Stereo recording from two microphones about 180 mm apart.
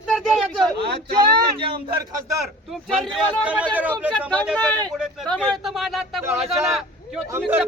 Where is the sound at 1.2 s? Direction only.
25° right (ahead or behind).